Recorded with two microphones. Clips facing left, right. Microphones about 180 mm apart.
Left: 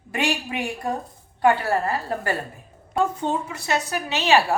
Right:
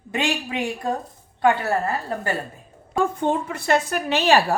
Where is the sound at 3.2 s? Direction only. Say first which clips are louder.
Right 3 dB; 55° right (ahead or behind).